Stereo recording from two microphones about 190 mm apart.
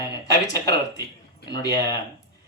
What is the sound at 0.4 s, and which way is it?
Speech, 20° left (ahead or behind).